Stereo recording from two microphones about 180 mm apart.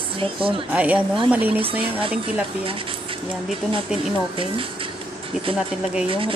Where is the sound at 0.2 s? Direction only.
30° right (ahead or behind).